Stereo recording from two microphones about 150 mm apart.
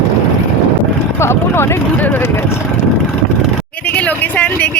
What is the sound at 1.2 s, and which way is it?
Vehicle, 15° left (ahead or behind).